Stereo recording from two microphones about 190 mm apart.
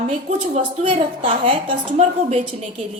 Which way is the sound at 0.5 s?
30° right (ahead or behind).